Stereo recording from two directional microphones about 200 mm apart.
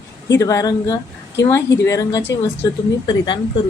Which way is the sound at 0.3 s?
15° left (ahead or behind).